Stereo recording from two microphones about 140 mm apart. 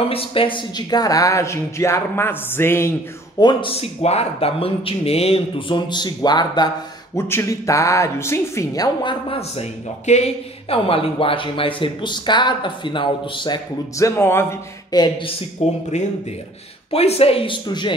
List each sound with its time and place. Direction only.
0.0 s speech: 40° left (ahead or behind); by 2.9 s 15° left (ahead or behind)
3.3 s speech: 30° left (ahead or behind)
3.7 s speech: 50° left (ahead or behind)
5.8 s speech: 30° left (ahead or behind)
7.2 s speech: 20° left (ahead or behind)
9.3 s speech: 45° left (ahead or behind)
13.9 s speech: 20° left (ahead or behind)
15.6 s speech: 50° left (ahead or behind)
16.9 s speech: 45° left (ahead or behind)